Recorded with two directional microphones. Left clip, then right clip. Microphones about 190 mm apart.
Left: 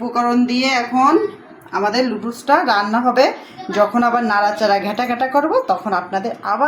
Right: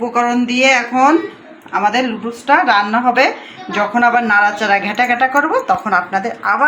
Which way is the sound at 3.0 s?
10° right (ahead or behind).